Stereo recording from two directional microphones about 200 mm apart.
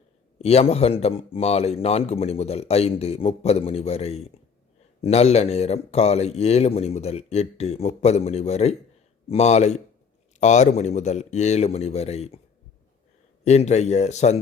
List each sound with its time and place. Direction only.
0.3 s speech: 30° left (ahead or behind)
13.4 s speech: 35° left (ahead or behind)